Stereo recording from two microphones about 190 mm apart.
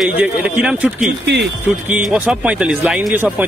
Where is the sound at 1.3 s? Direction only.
60° right (ahead or behind).